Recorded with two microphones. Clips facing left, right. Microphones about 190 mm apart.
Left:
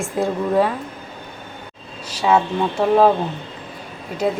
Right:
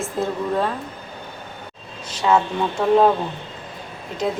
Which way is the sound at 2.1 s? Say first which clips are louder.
Left 1 dB; 10° left (ahead or behind).